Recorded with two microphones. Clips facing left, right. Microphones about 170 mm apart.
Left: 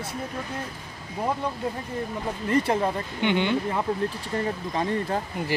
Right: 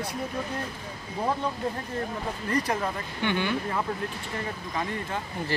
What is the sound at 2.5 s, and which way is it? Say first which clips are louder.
Speech: left 5 dB; 25° left (ahead or behind).